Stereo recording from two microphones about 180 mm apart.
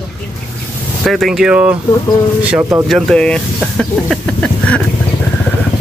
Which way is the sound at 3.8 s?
5° left (ahead or behind).